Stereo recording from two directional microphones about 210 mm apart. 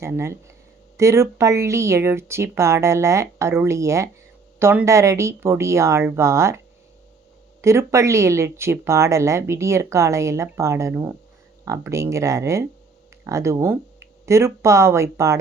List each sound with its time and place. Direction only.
0.0 s speech: 10° right (ahead or behind)
7.6 s speech: 15° right (ahead or behind)